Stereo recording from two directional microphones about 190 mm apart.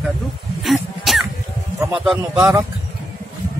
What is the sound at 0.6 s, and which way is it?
Cough, centre (ahead or behind).